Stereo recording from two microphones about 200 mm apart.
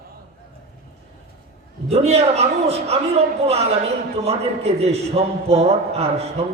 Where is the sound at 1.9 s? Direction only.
30° right (ahead or behind).